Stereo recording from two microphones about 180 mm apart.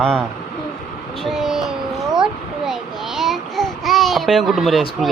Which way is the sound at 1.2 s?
Centre (ahead or behind).